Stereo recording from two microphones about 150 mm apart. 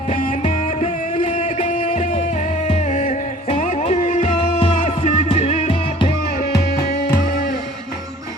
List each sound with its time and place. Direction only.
0.1 s music: 40° left (ahead or behind)
2.9 s music: 55° left (ahead or behind)